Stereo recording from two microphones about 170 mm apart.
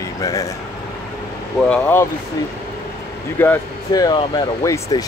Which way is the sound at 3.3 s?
10° left (ahead or behind).